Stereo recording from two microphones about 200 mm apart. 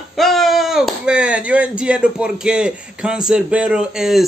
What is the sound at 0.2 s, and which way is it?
A man's voice, centre (ahead or behind).